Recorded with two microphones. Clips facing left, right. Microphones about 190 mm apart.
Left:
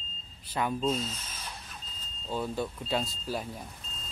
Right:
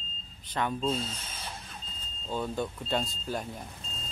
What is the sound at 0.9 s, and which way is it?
Speech, 30° right (ahead or behind).